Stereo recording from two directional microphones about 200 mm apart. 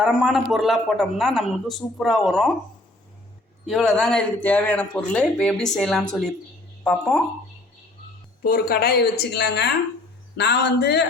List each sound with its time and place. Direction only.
0.0 s a man's voice: centre (ahead or behind)
3.7 s a man's voice: centre (ahead or behind)
8.4 s speech: 50° left (ahead or behind)